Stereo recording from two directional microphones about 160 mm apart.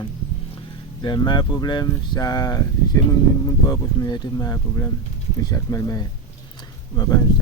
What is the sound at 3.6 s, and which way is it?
Speech, 25° left (ahead or behind).